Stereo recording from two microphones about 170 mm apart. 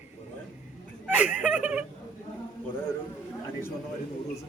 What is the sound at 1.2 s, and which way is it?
Speech, 10° right (ahead or behind).